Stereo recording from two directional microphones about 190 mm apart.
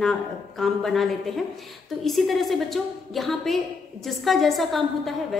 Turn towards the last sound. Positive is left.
turn(degrees=0)  # may be behind; listen again after turning